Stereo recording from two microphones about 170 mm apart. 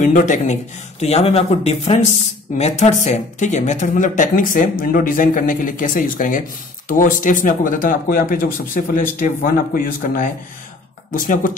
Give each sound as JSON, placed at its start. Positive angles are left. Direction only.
{"t": 0.0, "sound": "speech", "side_deg": 45}